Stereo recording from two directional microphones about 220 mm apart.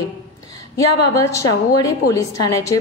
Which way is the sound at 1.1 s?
15° left (ahead or behind).